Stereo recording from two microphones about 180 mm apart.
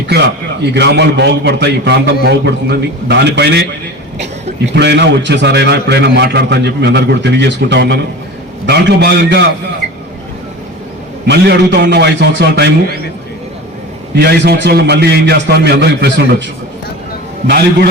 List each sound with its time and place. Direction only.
0.1 s a man's voice: 70° right (ahead or behind)
11.3 s a man's voice: 65° right (ahead or behind)
14.2 s a man's voice: 65° right (ahead or behind)